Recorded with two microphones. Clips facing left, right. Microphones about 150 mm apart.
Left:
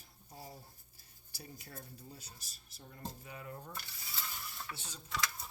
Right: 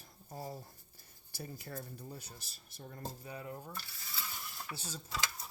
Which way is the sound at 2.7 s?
45° right (ahead or behind).